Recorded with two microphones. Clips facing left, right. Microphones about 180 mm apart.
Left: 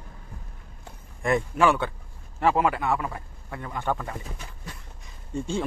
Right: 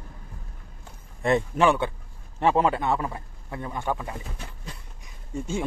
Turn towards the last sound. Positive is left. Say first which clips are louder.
# left 1 dB
turn(degrees=-5)  # may be behind; listen again after turning